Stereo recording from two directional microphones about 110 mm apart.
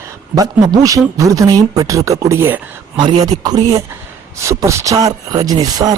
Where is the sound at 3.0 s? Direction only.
40° right (ahead or behind).